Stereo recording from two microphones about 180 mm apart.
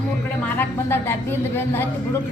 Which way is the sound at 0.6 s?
15° left (ahead or behind).